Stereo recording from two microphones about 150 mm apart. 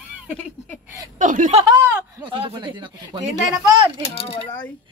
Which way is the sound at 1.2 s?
60° right (ahead or behind).